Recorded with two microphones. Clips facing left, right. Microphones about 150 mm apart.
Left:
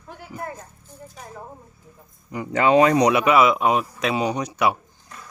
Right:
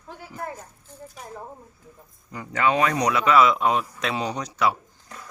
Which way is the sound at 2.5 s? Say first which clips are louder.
Left 6 dB; 30° left (ahead or behind).